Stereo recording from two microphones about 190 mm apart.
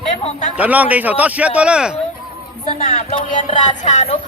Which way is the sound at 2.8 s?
45° left (ahead or behind).